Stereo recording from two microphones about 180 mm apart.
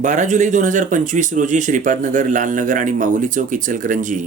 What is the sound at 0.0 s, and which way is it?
Speech, 45° right (ahead or behind).